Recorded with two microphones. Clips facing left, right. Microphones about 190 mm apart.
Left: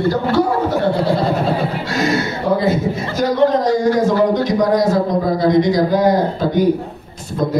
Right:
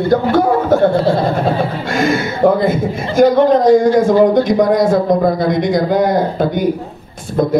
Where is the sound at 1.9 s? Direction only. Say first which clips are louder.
Right 3 dB; 50° right (ahead or behind).